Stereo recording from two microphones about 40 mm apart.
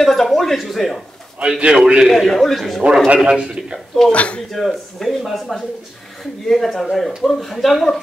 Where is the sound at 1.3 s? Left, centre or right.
Right.